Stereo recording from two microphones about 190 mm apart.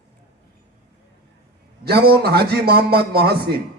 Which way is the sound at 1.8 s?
55° right (ahead or behind).